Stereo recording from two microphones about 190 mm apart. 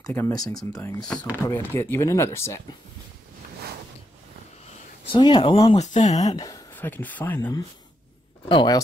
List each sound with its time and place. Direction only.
0.0 s speech: 15° left (ahead or behind)
5.1 s speech: 25° left (ahead or behind)
6.3 s speech: 20° left (ahead or behind)
6.7 s speech: 10° left (ahead or behind)
8.5 s speech: 25° left (ahead or behind)